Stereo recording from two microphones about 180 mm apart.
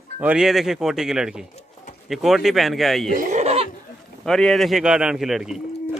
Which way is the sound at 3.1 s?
45° right (ahead or behind).